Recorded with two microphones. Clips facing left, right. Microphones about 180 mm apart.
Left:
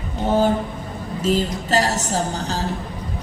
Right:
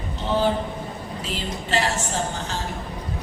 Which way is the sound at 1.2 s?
40° left (ahead or behind).